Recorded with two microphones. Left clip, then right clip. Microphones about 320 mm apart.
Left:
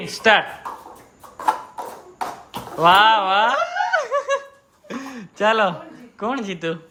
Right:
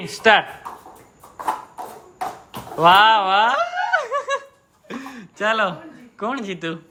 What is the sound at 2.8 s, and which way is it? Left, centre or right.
Snicker, centre.